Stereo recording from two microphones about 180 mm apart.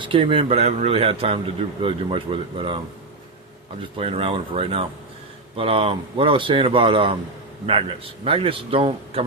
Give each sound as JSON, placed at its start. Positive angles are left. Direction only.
{"t": 0.0, "sound": "speech", "side_deg": -30}
{"t": 3.9, "sound": "speech", "side_deg": -30}